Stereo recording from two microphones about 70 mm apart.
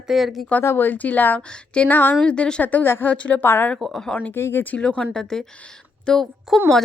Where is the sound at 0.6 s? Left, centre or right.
Left; by 2.8 s centre.